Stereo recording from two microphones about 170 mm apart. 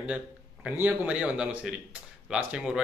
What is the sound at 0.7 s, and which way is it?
A man's voice, 10° right (ahead or behind).